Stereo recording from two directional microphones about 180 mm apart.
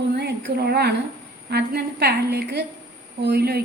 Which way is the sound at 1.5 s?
60° right (ahead or behind).